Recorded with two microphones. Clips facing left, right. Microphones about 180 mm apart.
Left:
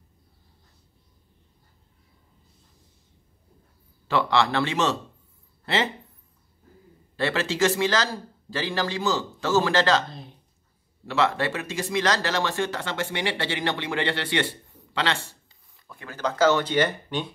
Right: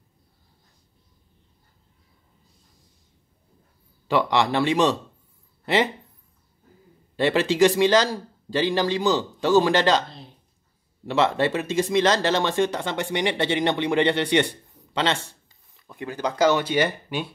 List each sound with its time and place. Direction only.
4.1 s a man's voice: 15° right (ahead or behind)
7.2 s a man's voice: 15° right (ahead or behind)
11.1 s speech: 20° right (ahead or behind)
15.9 s a man's voice: 15° right (ahead or behind)